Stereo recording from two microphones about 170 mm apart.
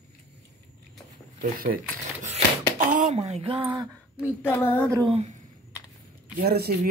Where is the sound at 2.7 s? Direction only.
50° right (ahead or behind).